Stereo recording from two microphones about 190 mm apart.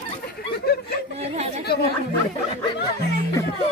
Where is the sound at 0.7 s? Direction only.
55° left (ahead or behind).